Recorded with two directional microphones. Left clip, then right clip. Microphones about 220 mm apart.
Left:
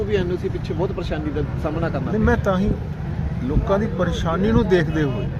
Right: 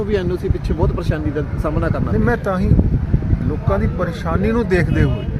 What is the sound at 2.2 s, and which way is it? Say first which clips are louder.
Speech: even; 5° right (ahead or behind).